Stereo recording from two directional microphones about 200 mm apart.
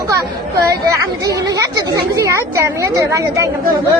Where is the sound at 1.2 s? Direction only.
15° right (ahead or behind).